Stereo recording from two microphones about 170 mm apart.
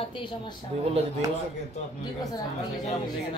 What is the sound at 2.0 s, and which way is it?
Speech, 20° left (ahead or behind).